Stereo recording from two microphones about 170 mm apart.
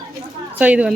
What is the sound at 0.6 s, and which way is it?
Speech, 5° right (ahead or behind).